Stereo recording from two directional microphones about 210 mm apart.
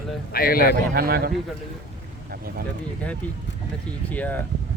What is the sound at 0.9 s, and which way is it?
Speech, 45° right (ahead or behind).